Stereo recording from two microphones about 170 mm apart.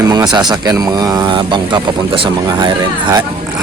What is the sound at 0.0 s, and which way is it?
Speech, 25° right (ahead or behind).